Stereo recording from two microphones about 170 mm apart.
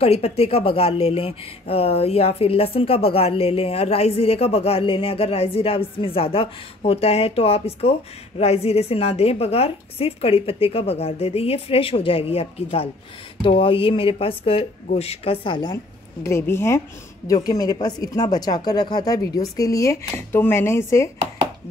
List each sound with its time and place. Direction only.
0.0 s speech: 35° left (ahead or behind)
16.3 s speech: 15° left (ahead or behind)